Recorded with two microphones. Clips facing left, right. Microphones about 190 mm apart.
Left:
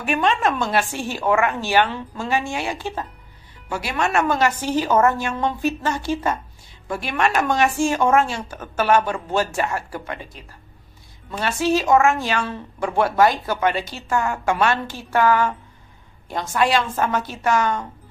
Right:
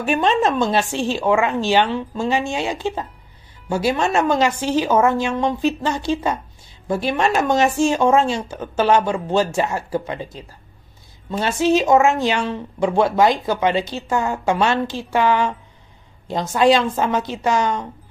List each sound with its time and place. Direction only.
0.0 s a woman's voice: 30° right (ahead or behind)